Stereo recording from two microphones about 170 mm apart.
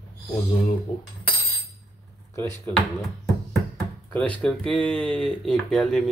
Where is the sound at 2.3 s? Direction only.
15° left (ahead or behind).